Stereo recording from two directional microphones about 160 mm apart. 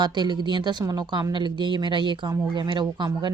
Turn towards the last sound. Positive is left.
turn(degrees=-25)  # may be behind; listen again after turning